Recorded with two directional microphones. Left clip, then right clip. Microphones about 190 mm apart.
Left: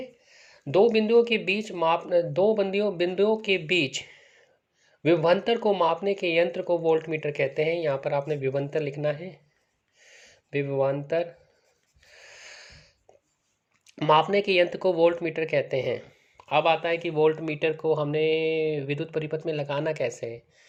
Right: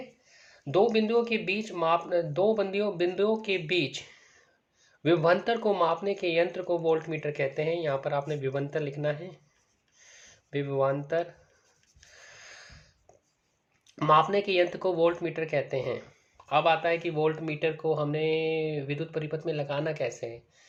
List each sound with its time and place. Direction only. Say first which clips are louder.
0.3 s speech: left 3 dB; 30° left (ahead or behind)
5.0 s speech: left 2 dB; 25° left (ahead or behind)
10.1 s a sound: left 4 dB; 25° left (ahead or behind)
12.1 s snort: left 3 dB; 25° left (ahead or behind)
13.8 s speech: left 1 dB; 20° left (ahead or behind)